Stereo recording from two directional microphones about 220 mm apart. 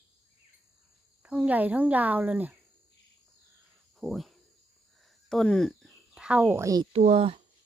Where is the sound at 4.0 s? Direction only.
Centre (ahead or behind); by 6.9 s 15° right (ahead or behind).